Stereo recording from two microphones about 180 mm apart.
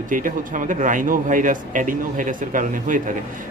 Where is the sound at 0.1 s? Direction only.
45° right (ahead or behind).